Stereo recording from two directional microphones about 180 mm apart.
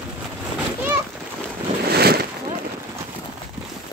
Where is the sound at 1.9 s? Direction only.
60° right (ahead or behind).